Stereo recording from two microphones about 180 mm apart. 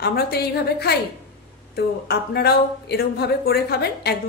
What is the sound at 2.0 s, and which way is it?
A woman's voice, 60° left (ahead or behind).